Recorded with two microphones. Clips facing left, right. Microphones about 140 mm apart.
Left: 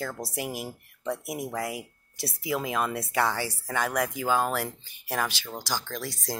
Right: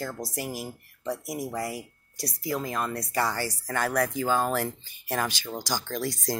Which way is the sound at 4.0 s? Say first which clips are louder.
Right 2 dB; 20° left (ahead or behind).